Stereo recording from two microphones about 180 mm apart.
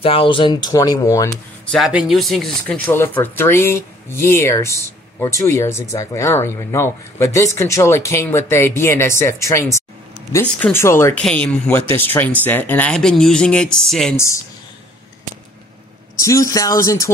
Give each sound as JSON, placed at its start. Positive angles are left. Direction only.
{"t": 0.0, "sound": "speech", "side_deg": 30}
{"t": 1.7, "sound": "speech", "side_deg": -5}
{"t": 14.1, "sound": "speech", "side_deg": 15}
{"t": 16.2, "sound": "speech", "side_deg": 15}